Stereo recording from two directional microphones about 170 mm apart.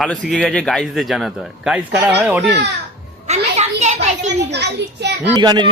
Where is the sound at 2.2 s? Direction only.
15° right (ahead or behind).